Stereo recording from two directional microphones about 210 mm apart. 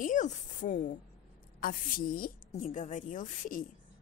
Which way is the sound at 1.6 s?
40° left (ahead or behind).